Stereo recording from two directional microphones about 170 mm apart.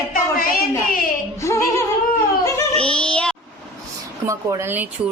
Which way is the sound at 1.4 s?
15° left (ahead or behind).